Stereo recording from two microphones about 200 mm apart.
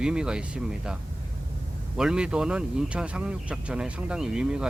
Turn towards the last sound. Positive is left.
turn(degrees=-5)  # may be behind; listen again after turning